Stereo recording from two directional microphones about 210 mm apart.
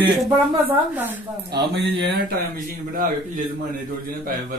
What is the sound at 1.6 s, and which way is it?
Speech, 55° right (ahead or behind).